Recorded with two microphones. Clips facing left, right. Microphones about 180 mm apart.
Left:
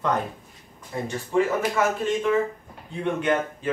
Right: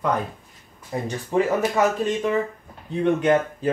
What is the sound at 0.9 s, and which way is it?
Speech, 25° right (ahead or behind).